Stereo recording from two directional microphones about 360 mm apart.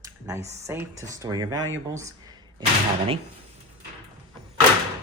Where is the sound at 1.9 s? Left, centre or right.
Centre.